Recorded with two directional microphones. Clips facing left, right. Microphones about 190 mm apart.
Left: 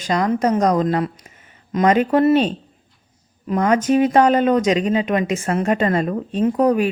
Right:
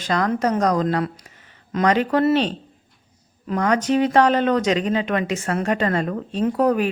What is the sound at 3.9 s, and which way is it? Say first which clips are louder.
A woman's voice: left 2 dB; 20° left (ahead or behind).